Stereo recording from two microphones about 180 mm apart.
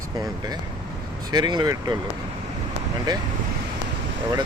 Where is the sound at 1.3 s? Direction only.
25° right (ahead or behind).